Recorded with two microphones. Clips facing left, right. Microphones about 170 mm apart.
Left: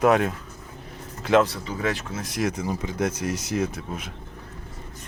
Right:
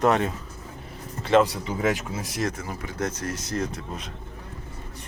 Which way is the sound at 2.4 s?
15° left (ahead or behind).